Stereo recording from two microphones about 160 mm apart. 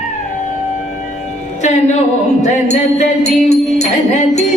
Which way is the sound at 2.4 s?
45° left (ahead or behind).